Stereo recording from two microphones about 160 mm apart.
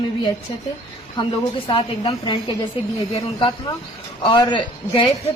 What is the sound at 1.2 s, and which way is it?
A woman's voice, 30° left (ahead or behind).